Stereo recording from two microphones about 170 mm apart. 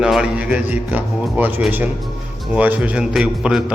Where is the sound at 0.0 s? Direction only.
5° right (ahead or behind).